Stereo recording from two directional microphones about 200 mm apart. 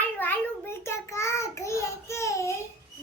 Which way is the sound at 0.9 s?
15° left (ahead or behind).